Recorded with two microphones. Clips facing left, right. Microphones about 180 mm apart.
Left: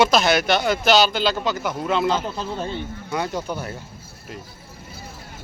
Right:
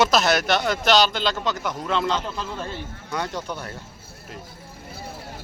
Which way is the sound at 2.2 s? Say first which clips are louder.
Left 3 dB; 35° left (ahead or behind).